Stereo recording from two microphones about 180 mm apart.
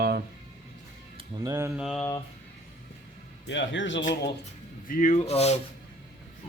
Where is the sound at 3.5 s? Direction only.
90° left.